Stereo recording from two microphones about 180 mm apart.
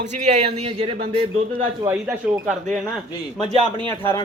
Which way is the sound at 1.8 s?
15° right (ahead or behind).